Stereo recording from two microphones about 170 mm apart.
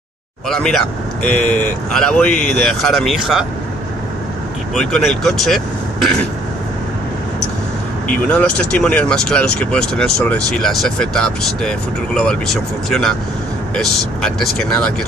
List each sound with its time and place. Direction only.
0.5 s speech: 5° left (ahead or behind)
4.7 s speech: 5° left (ahead or behind)
8.1 s speech: 5° left (ahead or behind)